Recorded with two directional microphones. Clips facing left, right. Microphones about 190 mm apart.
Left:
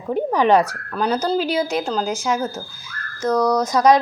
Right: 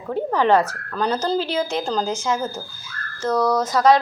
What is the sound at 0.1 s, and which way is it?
Speech, 15° left (ahead or behind).